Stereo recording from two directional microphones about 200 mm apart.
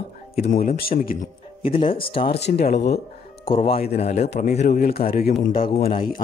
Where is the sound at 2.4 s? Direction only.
55° left (ahead or behind).